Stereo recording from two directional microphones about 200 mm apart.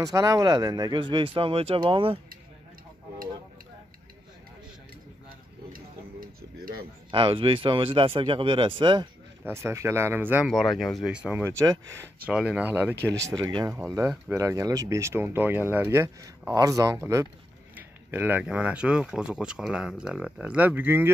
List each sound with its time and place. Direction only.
0.0 s speech: 15° right (ahead or behind)
5.7 s tick-tock: 45° right (ahead or behind)
7.1 s speech: 25° right (ahead or behind)
9.4 s speech: 15° right (ahead or behind)
12.3 s speech: 5° right (ahead or behind)
12.9 s speech: 60° right (ahead or behind)
13.3 s speech: 20° right (ahead or behind)